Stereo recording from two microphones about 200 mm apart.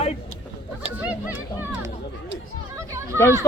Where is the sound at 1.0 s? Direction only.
10° right (ahead or behind).